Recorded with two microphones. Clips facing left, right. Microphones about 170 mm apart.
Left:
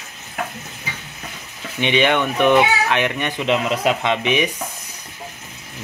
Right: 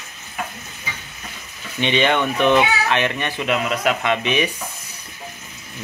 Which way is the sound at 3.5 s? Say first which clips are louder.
Left 2 dB; 30° left (ahead or behind).